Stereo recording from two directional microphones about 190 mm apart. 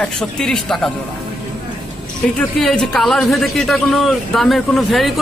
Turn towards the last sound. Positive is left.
turn(degrees=0)  # may be behind; listen again after turning